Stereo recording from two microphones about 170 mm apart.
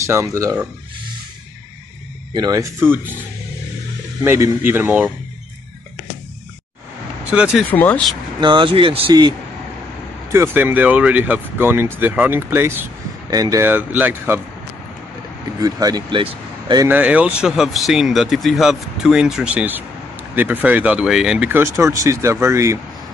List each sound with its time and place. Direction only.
0.0 s speech: 15° right (ahead or behind)
2.3 s speech: 20° right (ahead or behind)
4.2 s speech: 15° right (ahead or behind)
7.2 s speech: 5° right (ahead or behind)
7.7 s speech: 10° left (ahead or behind)
8.4 s speech: 30° right (ahead or behind)
10.3 s speech: 15° right (ahead or behind)
15.6 s speech: 20° right (ahead or behind)
16.8 s speech: 10° right (ahead or behind)